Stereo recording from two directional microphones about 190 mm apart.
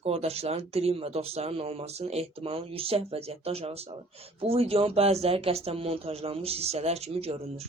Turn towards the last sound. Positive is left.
turn(degrees=-35)  # may be behind; listen again after turning